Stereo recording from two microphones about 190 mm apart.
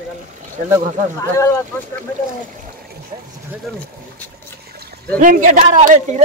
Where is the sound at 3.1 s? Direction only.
25° right (ahead or behind).